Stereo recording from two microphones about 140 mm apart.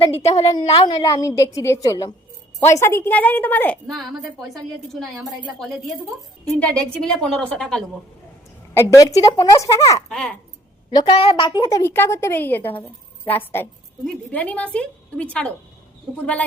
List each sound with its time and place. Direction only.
0.2 s a woman's voice: 50° left (ahead or behind)
0.9 s a woman's voice: 30° left (ahead or behind); by 3.9 s 10° left (ahead or behind)
3.9 s a woman's voice: centre (ahead or behind)
8.7 s a woman's voice: 20° left (ahead or behind)
10.1 s a woman's voice: 5° left (ahead or behind)
10.9 s a woman's voice: 40° left (ahead or behind); by 15.5 s 10° left (ahead or behind)